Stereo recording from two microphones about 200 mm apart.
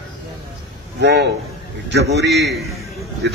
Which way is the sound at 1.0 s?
55° right (ahead or behind).